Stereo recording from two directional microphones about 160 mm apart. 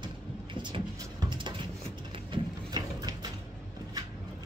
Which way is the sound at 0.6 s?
30° right (ahead or behind).